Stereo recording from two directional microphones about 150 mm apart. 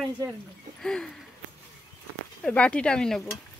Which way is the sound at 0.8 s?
5° left (ahead or behind).